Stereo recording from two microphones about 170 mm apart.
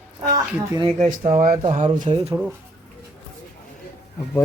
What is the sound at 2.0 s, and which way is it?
Speech, 35° right (ahead or behind).